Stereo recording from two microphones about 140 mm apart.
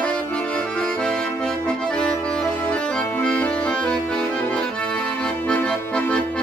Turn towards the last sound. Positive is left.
turn(degrees=10)  # may be behind; listen again after turning